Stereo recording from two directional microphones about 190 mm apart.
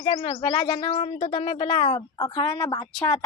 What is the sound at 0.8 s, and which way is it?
A woman's voice, 35° left (ahead or behind).